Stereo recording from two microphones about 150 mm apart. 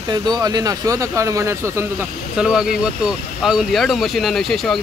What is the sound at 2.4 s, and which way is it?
Speech, 5° right (ahead or behind).